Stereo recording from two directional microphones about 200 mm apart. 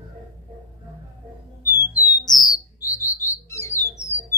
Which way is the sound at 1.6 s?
10° right (ahead or behind).